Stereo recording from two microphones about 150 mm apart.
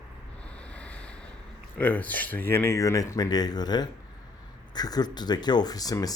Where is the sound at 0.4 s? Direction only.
10° left (ahead or behind).